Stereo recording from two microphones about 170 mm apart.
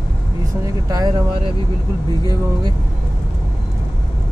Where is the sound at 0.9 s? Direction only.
20° right (ahead or behind).